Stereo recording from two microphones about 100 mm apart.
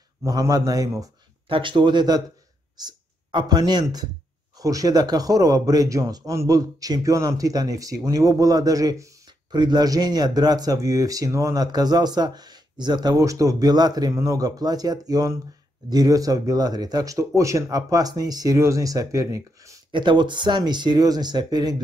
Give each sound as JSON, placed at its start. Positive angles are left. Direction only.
{"t": 0.2, "sound": "speech", "side_deg": -35}
{"t": 1.5, "sound": "speech", "side_deg": -55}
{"t": 9.5, "sound": "speech", "side_deg": -45}
{"t": 19.9, "sound": "speech", "side_deg": -50}